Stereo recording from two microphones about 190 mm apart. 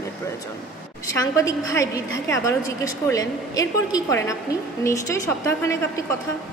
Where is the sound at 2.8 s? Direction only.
20° left (ahead or behind).